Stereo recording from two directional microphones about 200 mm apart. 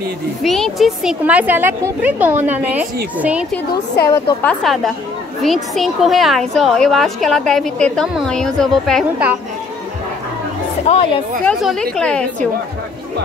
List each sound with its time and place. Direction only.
0.4 s speech: centre (ahead or behind)
4.0 s a woman's voice: 15° left (ahead or behind)
10.9 s speech: 35° left (ahead or behind)
11.4 s a woman's voice: 5° left (ahead or behind)